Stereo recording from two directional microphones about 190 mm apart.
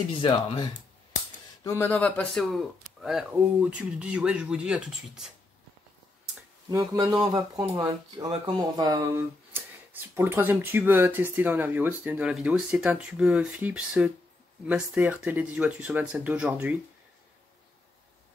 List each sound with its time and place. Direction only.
1.6 s speech: 15° left (ahead or behind); by 5.3 s 5° right (ahead or behind)
6.7 s speech: 20° right (ahead or behind)